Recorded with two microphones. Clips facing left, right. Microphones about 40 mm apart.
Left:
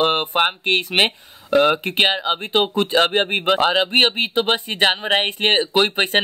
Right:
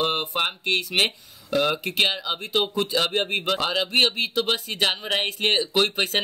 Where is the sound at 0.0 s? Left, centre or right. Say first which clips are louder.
Left 6 dB; left.